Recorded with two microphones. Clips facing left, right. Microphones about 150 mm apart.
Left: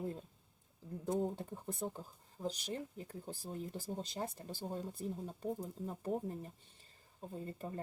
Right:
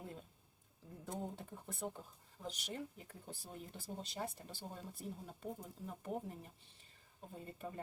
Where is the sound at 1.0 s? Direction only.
40° left (ahead or behind).